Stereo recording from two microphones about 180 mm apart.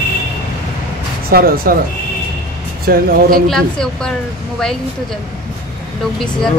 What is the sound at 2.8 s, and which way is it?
Speech, 55° right (ahead or behind).